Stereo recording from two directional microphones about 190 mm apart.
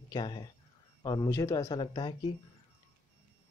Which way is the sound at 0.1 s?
25° left (ahead or behind).